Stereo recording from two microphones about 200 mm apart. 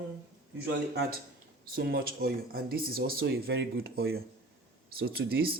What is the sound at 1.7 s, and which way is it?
Speech, 50° right (ahead or behind).